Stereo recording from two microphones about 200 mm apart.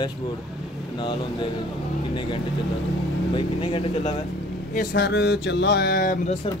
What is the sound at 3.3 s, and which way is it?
Speech, 25° left (ahead or behind).